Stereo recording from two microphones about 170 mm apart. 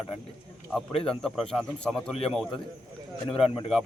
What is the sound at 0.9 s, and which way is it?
Speech, 35° left (ahead or behind).